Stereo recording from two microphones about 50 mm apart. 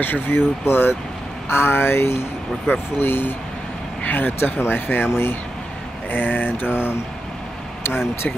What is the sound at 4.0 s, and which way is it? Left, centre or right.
Speech, left.